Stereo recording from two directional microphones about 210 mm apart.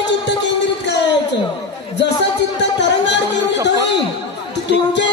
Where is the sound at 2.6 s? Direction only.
55° left (ahead or behind).